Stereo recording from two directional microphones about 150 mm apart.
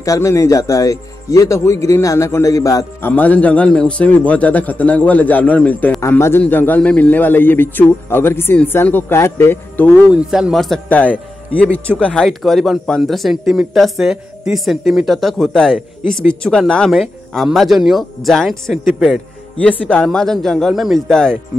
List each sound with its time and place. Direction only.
0.0 s speech: 20° left (ahead or behind)
3.1 s speech: 10° left (ahead or behind)
10.1 s speech: 5° right (ahead or behind)
16.0 s speech: 15° right (ahead or behind)
16.4 s speech: 5° left (ahead or behind)